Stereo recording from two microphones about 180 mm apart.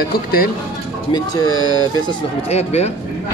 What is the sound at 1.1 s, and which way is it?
Speech, 20° left (ahead or behind).